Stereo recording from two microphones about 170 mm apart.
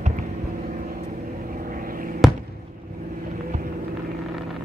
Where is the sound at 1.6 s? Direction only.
55° right (ahead or behind).